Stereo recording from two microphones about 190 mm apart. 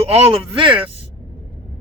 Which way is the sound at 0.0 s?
30° right (ahead or behind).